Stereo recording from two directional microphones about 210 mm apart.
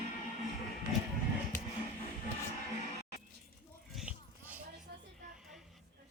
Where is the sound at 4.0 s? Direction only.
5° right (ahead or behind).